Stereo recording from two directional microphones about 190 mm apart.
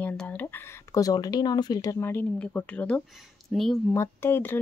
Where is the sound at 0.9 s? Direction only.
20° left (ahead or behind); by 3.7 s centre (ahead or behind).